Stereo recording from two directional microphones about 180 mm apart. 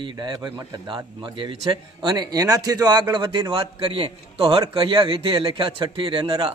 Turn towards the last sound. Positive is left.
turn(degrees=-25)  # may be behind; listen again after turning